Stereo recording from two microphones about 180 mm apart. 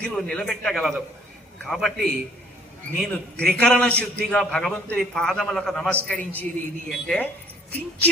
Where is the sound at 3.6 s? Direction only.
5° left (ahead or behind).